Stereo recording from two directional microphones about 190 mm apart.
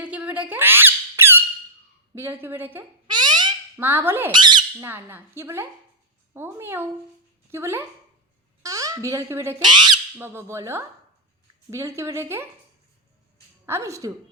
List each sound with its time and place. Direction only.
0.0 s squeak: 5° right (ahead or behind)
2.1 s speech: 10° right (ahead or behind)
3.1 s a sound: 25° right (ahead or behind)
3.8 s speech: 10° right (ahead or behind)
4.3 s speech: 25° right (ahead or behind)
4.9 s speech: 10° right (ahead or behind)
9.6 s speech: 25° right (ahead or behind)
10.2 s speech: 10° right (ahead or behind)
13.7 s speech: 15° right (ahead or behind)